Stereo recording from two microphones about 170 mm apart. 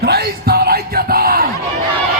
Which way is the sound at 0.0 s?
70° right (ahead or behind).